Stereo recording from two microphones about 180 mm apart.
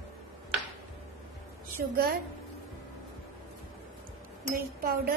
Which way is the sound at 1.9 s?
60° right (ahead or behind).